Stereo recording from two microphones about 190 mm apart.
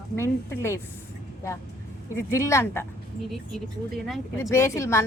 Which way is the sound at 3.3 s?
Centre (ahead or behind).